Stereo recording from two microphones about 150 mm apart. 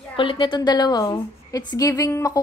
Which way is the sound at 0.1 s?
35° left (ahead or behind).